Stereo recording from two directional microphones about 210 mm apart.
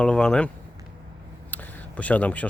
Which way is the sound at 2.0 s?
5° left (ahead or behind).